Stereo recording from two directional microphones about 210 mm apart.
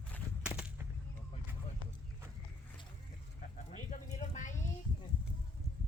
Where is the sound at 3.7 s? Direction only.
35° left (ahead or behind).